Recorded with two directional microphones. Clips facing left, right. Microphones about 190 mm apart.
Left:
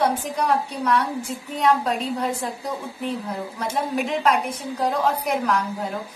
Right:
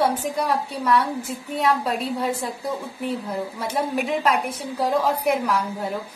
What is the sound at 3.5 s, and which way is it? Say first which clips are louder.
A woman's voice: left 1 dB; centre (ahead or behind).